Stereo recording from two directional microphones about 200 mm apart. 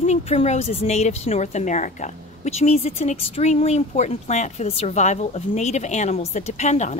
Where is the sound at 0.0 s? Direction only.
30° left (ahead or behind).